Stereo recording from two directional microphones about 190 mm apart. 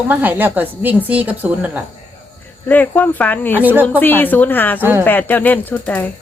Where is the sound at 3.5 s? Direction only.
10° right (ahead or behind).